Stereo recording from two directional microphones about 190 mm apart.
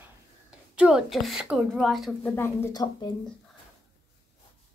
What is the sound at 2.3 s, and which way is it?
Speech, 10° left (ahead or behind).